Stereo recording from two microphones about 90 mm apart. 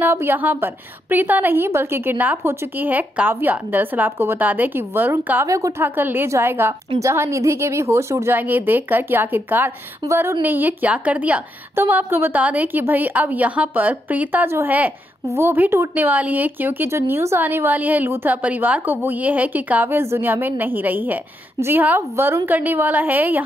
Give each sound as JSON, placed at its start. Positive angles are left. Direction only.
{"t": 0.0, "sound": "speech", "side_deg": -25}
{"t": 5.8, "sound": "speech", "side_deg": -20}